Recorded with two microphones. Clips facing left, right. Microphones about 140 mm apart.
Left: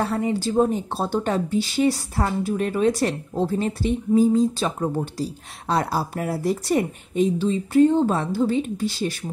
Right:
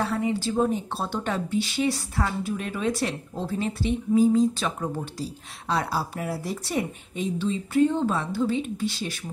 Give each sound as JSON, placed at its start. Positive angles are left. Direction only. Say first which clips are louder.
{"t": 0.0, "sound": "a woman's voice", "louder": "left 3 dB", "side_deg": 40}